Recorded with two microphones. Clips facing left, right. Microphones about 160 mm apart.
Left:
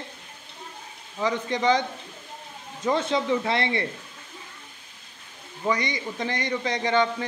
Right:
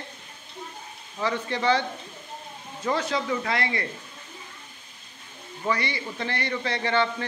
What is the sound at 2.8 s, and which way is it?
Speech, 25° left (ahead or behind).